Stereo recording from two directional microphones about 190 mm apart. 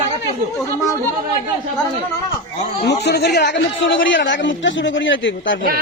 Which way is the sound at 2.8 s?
60° left (ahead or behind).